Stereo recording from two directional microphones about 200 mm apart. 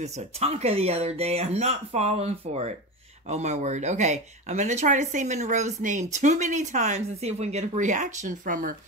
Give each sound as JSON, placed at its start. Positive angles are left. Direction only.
{"t": 0.0, "sound": "speech", "side_deg": -30}